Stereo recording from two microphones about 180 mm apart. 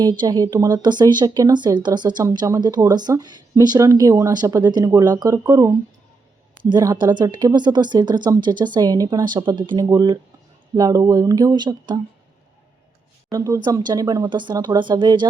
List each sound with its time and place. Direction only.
0.0 s speech: 20° right (ahead or behind)
13.3 s speech: 20° right (ahead or behind)